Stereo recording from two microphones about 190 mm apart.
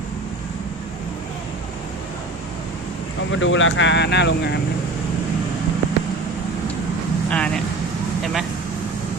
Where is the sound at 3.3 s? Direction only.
90° left; by 4.6 s 65° left (ahead or behind).